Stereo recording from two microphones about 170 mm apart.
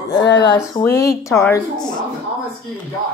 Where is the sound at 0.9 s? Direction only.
70° left (ahead or behind).